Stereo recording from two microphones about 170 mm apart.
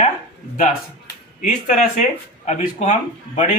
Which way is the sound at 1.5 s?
50° left (ahead or behind).